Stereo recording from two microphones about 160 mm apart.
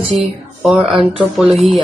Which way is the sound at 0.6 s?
Centre (ahead or behind).